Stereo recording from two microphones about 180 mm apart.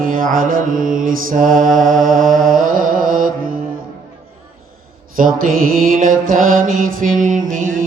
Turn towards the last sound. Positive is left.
turn(degrees=-45)  # may be behind; listen again after turning